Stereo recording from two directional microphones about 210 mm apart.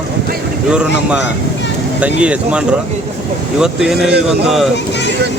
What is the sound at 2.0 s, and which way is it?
Speech, 5° right (ahead or behind).